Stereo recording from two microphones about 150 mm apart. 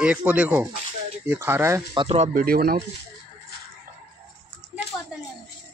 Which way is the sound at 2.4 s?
85° right.